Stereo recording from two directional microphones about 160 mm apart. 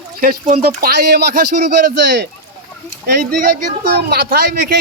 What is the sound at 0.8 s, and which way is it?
Speech, 70° right (ahead or behind).